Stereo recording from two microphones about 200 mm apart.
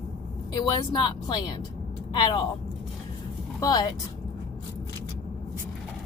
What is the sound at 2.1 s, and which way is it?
Speech, 20° left (ahead or behind).